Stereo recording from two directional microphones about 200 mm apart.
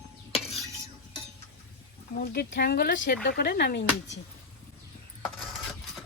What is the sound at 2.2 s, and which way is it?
Speech, 55° left (ahead or behind).